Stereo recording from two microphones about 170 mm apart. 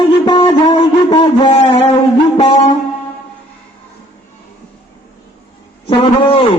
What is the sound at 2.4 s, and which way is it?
Music, 30° left (ahead or behind).